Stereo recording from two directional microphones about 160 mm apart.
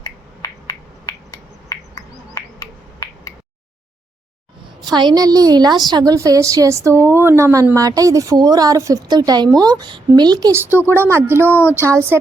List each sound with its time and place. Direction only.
0.4 s a sound: 25° left (ahead or behind)
4.9 s a woman's voice: 25° right (ahead or behind)
10.6 s speech: 10° right (ahead or behind)
11.4 s speech: 15° left (ahead or behind)
11.8 s speech: 15° right (ahead or behind)